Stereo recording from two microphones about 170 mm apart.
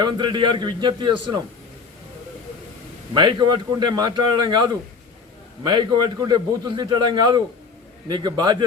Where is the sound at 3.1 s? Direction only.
25° right (ahead or behind).